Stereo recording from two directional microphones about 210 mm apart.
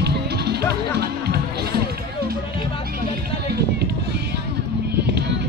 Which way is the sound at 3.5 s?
50° right (ahead or behind).